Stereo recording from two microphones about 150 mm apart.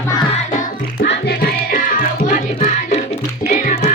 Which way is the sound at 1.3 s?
65° left (ahead or behind).